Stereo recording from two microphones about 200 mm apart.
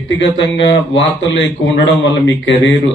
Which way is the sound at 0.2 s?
65° left (ahead or behind).